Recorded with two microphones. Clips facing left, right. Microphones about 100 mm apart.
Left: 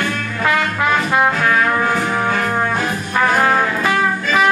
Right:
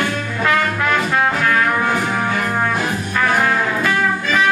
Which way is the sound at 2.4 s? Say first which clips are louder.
Left 1 dB; 20° left (ahead or behind).